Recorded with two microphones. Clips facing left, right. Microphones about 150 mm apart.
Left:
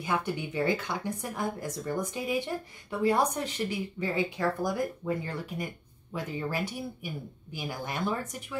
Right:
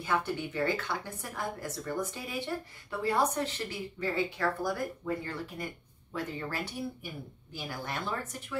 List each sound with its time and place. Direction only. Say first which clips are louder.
0.0 s a woman's voice: left 1 dB; 15° left (ahead or behind)